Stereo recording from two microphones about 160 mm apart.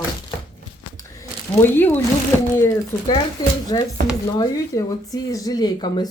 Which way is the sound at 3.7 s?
25° left (ahead or behind).